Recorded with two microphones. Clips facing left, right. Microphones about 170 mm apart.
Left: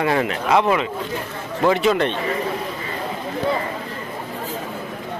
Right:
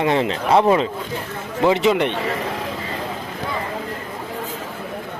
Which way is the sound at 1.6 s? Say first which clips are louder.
Right 1 dB; 20° right (ahead or behind).